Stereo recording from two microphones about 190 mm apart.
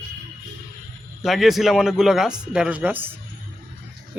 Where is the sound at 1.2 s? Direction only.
Centre (ahead or behind).